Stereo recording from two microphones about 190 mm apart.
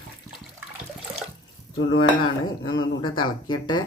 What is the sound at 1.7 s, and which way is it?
Cutlery, 90° left.